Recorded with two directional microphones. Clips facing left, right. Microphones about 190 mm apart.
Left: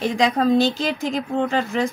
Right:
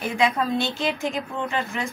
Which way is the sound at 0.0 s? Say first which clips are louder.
Left 4 dB; 35° left (ahead or behind).